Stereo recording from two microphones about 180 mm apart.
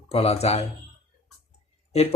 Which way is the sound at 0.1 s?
35° left (ahead or behind).